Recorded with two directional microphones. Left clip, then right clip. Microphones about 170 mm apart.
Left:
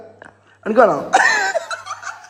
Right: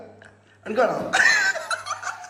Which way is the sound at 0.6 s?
70° left (ahead or behind).